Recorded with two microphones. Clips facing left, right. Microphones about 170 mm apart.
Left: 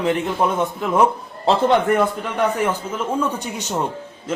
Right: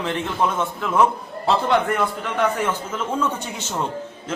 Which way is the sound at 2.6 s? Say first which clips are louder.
Left 2 dB; 10° left (ahead or behind).